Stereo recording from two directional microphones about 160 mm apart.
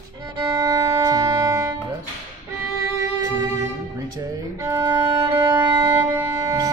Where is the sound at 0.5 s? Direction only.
20° right (ahead or behind).